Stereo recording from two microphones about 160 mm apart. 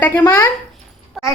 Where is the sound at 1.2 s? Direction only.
Centre (ahead or behind).